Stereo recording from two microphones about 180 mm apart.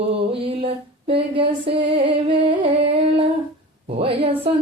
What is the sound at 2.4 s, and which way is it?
Humming, 30° right (ahead or behind).